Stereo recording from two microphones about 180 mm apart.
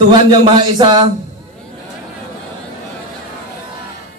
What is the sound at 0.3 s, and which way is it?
Speech, 25° right (ahead or behind).